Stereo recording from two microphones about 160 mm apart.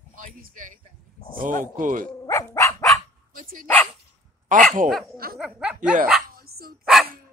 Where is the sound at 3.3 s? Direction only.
55° right (ahead or behind).